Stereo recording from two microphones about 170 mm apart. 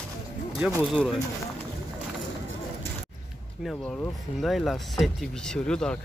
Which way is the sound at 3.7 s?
5° left (ahead or behind).